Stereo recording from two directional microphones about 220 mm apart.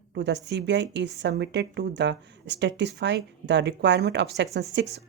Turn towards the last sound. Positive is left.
turn(degrees=-50)  # may be behind; listen again after turning